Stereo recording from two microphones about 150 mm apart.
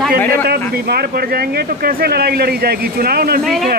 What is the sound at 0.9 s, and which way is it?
Speech, 90° right.